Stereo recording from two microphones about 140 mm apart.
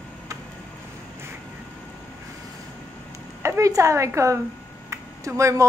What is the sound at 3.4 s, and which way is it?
A woman's voice, 20° right (ahead or behind).